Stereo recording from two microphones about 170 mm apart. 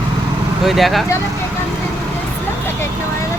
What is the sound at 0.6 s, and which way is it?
Speech, centre (ahead or behind).